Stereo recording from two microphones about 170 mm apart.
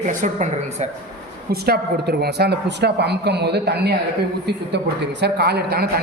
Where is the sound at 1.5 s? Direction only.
65° right (ahead or behind).